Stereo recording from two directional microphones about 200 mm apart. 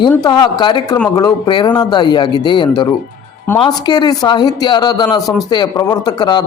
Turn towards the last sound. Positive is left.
turn(degrees=20)  # may be behind; listen again after turning